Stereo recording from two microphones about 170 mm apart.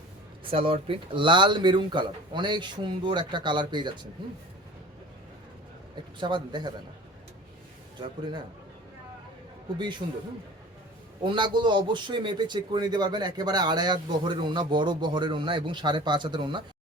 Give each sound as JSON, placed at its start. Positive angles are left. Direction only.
{"t": 0.5, "sound": "a man's voice", "side_deg": -30}
{"t": 6.1, "sound": "a man's voice", "side_deg": -25}
{"t": 8.0, "sound": "a man's voice", "side_deg": -25}
{"t": 9.7, "sound": "a man's voice", "side_deg": -25}
{"t": 11.2, "sound": "a man's voice", "side_deg": -30}